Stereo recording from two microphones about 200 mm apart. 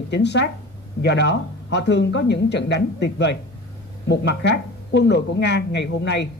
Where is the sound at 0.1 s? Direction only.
60° left (ahead or behind).